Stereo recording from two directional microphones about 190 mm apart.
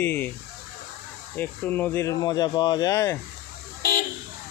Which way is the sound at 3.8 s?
50° left (ahead or behind).